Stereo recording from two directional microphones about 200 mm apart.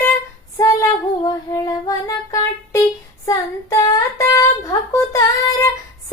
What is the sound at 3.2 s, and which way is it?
Child singing, 15° left (ahead or behind).